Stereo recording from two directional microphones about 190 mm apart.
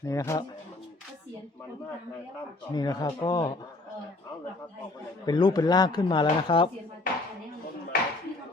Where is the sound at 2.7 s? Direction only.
20° left (ahead or behind).